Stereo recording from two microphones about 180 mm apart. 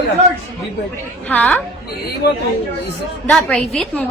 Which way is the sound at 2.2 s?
65° left (ahead or behind).